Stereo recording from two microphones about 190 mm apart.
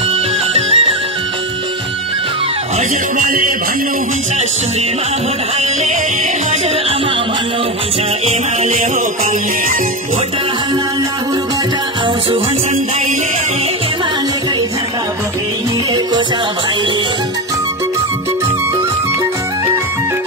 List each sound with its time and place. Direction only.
0.6 s music: 30° right (ahead or behind)
3.2 s music: 45° right (ahead or behind)